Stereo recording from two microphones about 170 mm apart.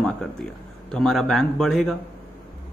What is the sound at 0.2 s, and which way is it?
A man's voice, 5° left (ahead or behind).